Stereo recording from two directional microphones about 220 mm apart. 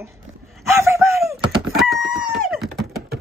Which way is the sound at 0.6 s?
10° right (ahead or behind).